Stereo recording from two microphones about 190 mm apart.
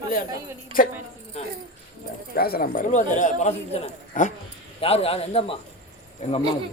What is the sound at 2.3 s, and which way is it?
A man's voice, 55° left (ahead or behind).